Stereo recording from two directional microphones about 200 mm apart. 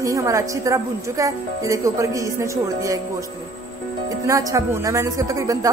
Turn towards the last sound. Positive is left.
turn(degrees=-15)  # may be behind; listen again after turning